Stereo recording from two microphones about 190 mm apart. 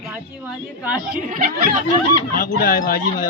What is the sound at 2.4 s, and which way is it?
Speech, 45° left (ahead or behind).